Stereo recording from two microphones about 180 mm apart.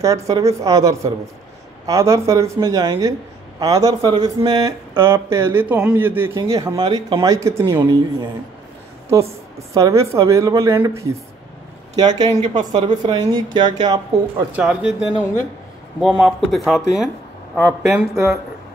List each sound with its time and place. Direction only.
0.0 s speech: 15° right (ahead or behind)
9.8 s speech: 15° right (ahead or behind)
14.5 s speech: 5° right (ahead or behind)